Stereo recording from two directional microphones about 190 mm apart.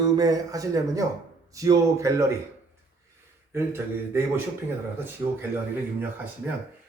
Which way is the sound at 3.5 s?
15° right (ahead or behind).